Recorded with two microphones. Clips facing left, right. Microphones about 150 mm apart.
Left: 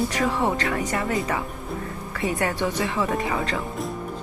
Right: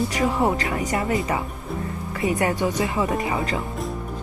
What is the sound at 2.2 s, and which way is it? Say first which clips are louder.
A woman's voice: right 3 dB; 20° right (ahead or behind).